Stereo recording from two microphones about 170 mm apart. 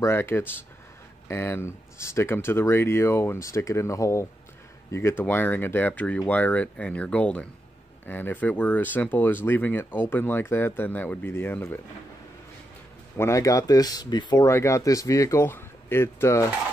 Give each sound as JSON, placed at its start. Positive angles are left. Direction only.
{"t": 0.0, "sound": "speech", "side_deg": 15}
{"t": 13.2, "sound": "speech", "side_deg": 20}